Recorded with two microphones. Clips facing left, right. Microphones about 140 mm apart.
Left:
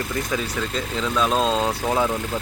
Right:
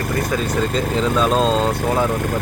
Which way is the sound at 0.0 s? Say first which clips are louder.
Right 5 dB; 50° right (ahead or behind).